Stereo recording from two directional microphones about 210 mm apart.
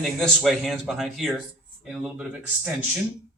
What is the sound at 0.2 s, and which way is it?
Speech, centre (ahead or behind).